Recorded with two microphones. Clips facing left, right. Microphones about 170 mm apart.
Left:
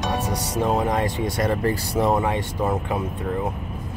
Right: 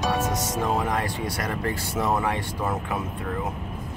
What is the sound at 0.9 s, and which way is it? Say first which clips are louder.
Speech: left 4 dB; 25° left (ahead or behind).